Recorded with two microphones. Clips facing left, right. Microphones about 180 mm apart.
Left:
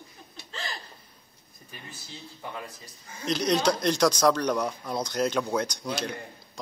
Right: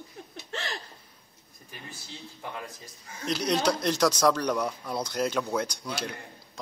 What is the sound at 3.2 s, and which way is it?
Speech, 5° right (ahead or behind).